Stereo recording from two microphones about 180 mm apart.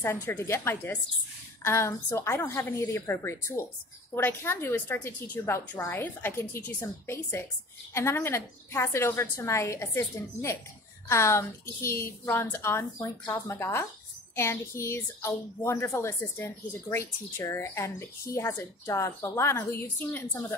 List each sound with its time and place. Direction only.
0.0 s a woman's voice: 15° left (ahead or behind)